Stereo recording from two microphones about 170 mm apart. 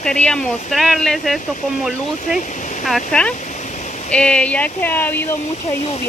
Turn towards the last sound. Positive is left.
turn(degrees=10)  # may be behind; listen again after turning